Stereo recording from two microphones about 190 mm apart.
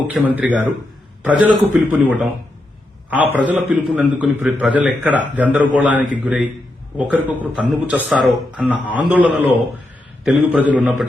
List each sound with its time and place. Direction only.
0.1 s a man's voice: 5° right (ahead or behind)